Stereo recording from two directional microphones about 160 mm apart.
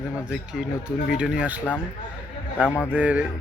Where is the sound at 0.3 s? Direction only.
5° right (ahead or behind).